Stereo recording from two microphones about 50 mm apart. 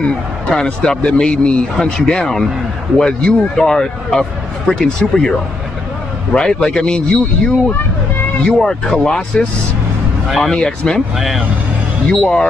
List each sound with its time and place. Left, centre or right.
0.5 s a man's voice: centre
6.3 s speech: centre
10.2 s speech: centre
10.5 s a man's voice: centre
11.1 s speech: centre
12.1 s speech: centre